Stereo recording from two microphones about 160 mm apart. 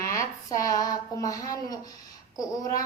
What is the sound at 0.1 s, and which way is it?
Speech, 20° left (ahead or behind).